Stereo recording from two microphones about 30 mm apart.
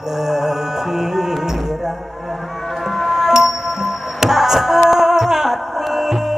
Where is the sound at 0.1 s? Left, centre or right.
Centre.